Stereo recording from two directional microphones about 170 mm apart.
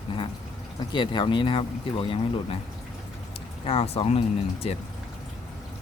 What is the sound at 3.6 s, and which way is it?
Speech, 35° left (ahead or behind).